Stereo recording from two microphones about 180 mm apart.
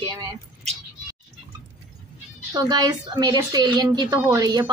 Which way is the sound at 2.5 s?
20° right (ahead or behind).